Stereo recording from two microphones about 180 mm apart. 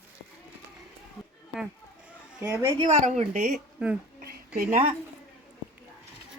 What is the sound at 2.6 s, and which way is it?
Speech, 25° right (ahead or behind).